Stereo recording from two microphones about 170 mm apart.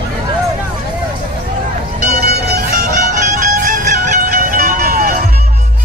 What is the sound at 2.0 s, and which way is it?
Music, 60° right (ahead or behind).